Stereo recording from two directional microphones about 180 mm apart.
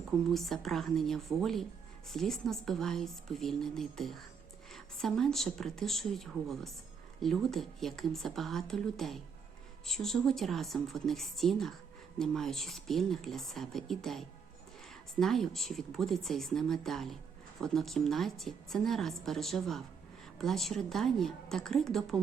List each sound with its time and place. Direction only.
0.3 s a woman's voice: centre (ahead or behind)